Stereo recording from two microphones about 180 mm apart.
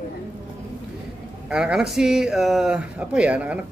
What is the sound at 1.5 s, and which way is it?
A man's voice, 5° right (ahead or behind).